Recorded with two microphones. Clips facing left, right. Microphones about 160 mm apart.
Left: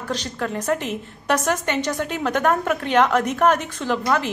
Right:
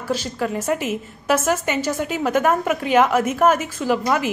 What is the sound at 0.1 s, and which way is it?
A woman's voice, 5° right (ahead or behind).